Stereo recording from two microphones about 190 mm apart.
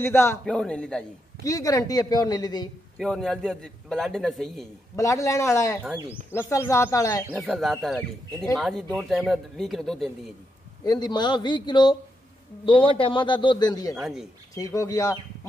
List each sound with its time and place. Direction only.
0.0 s a man's voice: 15° left (ahead or behind)
1.4 s a woman's voice: 20° left (ahead or behind)
3.0 s a man's voice: 5° left (ahead or behind)
4.9 s speech: 15° left (ahead or behind)
7.2 s a man's voice: centre (ahead or behind)
10.8 s a woman's voice: 20° left (ahead or behind)
13.9 s a man's voice: centre (ahead or behind)
14.5 s speech: 15° left (ahead or behind)